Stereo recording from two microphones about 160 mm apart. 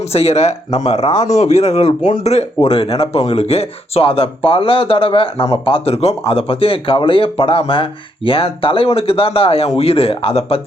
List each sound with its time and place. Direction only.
0.1 s speech: 40° left (ahead or behind)